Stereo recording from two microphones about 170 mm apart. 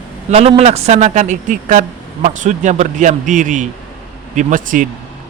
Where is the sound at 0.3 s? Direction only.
35° right (ahead or behind).